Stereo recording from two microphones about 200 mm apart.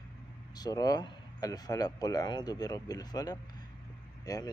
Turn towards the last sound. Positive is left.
turn(degrees=20)  # may be behind; listen again after turning